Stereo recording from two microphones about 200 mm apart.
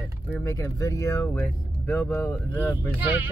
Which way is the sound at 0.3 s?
15° left (ahead or behind).